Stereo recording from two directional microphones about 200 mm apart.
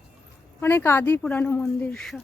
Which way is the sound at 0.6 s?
10° left (ahead or behind).